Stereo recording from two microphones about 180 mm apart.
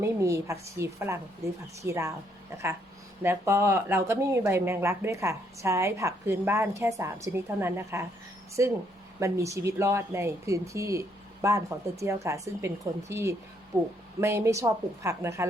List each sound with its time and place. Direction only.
0.0 s speech: 15° right (ahead or behind)
3.2 s speech: 15° right (ahead or behind)